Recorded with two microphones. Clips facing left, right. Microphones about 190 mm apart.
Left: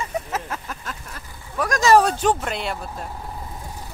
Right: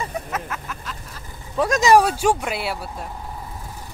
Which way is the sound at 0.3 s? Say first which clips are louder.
Even; 30° left (ahead or behind).